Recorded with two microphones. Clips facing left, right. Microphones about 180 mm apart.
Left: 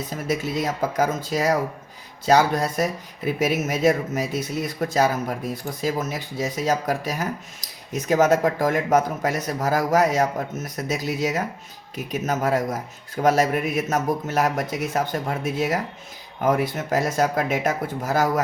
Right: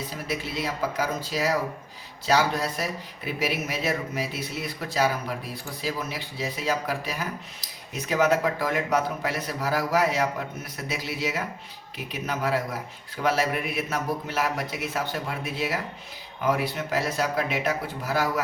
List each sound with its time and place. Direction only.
0.3 s speech: 45° left (ahead or behind)